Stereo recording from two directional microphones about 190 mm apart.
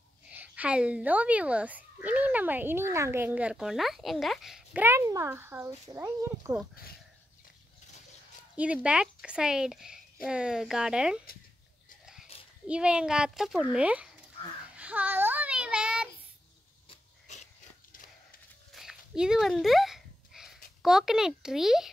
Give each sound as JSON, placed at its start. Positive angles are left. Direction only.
{"t": 0.3, "sound": "speech", "side_deg": -10}
{"t": 8.5, "sound": "a child's voice", "side_deg": -5}
{"t": 12.6, "sound": "a child's voice", "side_deg": -5}
{"t": 14.8, "sound": "child singing", "side_deg": -5}
{"t": 17.3, "sound": "dog", "side_deg": 35}
{"t": 18.7, "sound": "a sound", "side_deg": 0}
{"t": 20.8, "sound": "a child's voice", "side_deg": 0}